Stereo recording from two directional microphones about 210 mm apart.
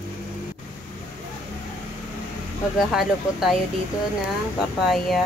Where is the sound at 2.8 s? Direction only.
Centre (ahead or behind).